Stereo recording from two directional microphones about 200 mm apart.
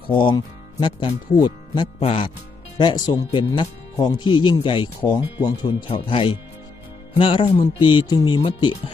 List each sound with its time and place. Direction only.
0.1 s speech: 25° left (ahead or behind)